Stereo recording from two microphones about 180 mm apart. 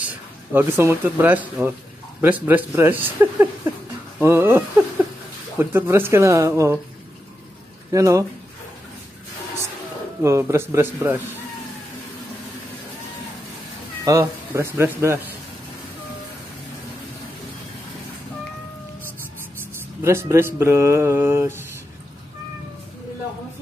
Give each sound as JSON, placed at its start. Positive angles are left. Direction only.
{"t": 0.0, "sound": "speech", "side_deg": -10}
{"t": 7.9, "sound": "speech", "side_deg": -15}
{"t": 10.2, "sound": "speech", "side_deg": -15}
{"t": 14.0, "sound": "speech", "side_deg": -15}
{"t": 20.0, "sound": "speech", "side_deg": -15}